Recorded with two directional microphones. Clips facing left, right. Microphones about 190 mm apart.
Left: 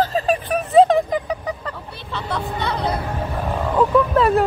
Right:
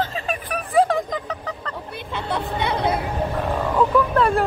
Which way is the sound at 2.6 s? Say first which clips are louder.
Right 2 dB; 25° right (ahead or behind).